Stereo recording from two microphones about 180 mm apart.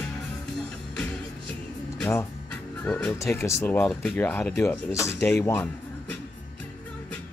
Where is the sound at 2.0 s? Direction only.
15° left (ahead or behind).